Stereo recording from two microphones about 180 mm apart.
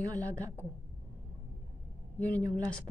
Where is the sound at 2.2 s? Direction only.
10° left (ahead or behind).